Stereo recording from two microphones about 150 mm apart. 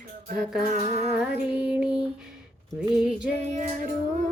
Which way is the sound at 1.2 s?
5° right (ahead or behind).